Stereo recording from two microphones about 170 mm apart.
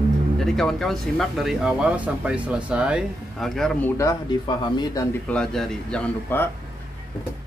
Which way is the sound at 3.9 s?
20° left (ahead or behind).